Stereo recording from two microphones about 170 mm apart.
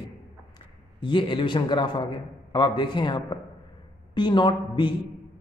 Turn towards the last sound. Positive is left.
turn(degrees=25)  # may be behind; listen again after turning